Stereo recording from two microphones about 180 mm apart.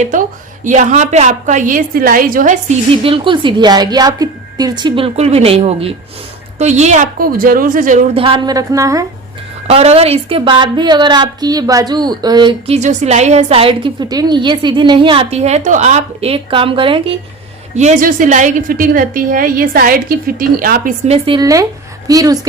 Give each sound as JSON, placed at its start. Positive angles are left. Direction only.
{"t": 0.0, "sound": "a woman's voice", "side_deg": -45}
{"t": 8.1, "sound": "a woman's voice", "side_deg": -30}
{"t": 9.6, "sound": "a woman's voice", "side_deg": -35}
{"t": 17.7, "sound": "a woman's voice", "side_deg": -45}
{"t": 21.1, "sound": "speech", "side_deg": -25}